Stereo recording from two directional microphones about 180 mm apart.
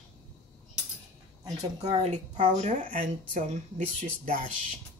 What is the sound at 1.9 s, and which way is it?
Speech, 40° right (ahead or behind).